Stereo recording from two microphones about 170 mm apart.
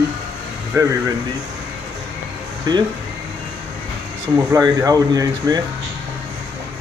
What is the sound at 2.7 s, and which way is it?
Speech, 25° right (ahead or behind).